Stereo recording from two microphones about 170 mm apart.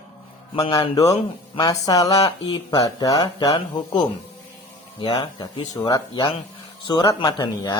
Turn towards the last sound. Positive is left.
turn(degrees=25)  # may be behind; listen again after turning